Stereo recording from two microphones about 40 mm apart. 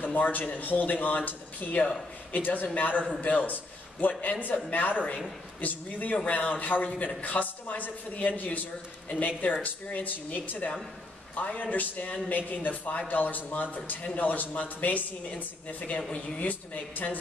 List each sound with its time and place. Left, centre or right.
0.0 s a man's voice: left
1.8 s speech: centre
2.3 s speech: left
4.2 s speech: left